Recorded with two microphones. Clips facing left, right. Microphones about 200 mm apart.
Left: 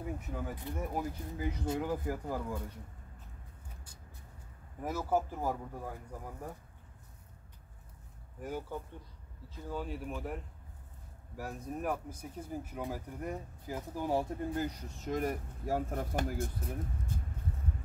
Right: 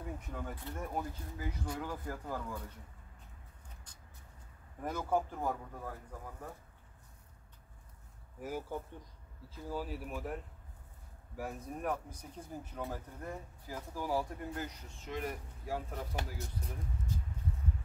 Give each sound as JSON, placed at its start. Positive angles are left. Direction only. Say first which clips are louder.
{"t": 0.0, "sound": "speech", "louder": "left 3 dB", "side_deg": 5}
{"t": 1.1, "sound": "speech", "louder": "left 5 dB", "side_deg": 20}
{"t": 4.8, "sound": "speech", "louder": "left 2 dB", "side_deg": 5}
{"t": 8.4, "sound": "speech", "louder": "even", "side_deg": -5}
{"t": 14.6, "sound": "speech", "louder": "left 7 dB", "side_deg": 40}